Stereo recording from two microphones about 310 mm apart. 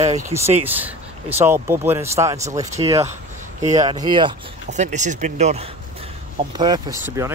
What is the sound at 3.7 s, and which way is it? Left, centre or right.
Speech, centre.